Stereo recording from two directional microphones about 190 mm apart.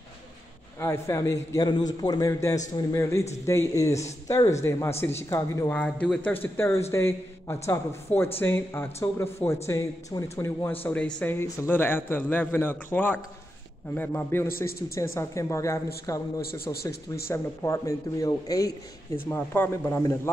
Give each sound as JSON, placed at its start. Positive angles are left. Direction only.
{"t": 0.7, "sound": "speech", "side_deg": 15}
{"t": 16.3, "sound": "a man's voice", "side_deg": 55}
{"t": 17.3, "sound": "speech", "side_deg": 15}